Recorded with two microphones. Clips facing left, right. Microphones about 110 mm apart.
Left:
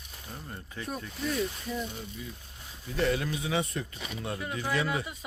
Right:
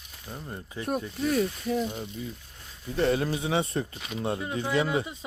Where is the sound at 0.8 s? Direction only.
55° right (ahead or behind).